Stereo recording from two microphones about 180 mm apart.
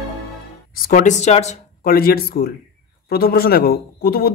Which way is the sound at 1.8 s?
55° left (ahead or behind).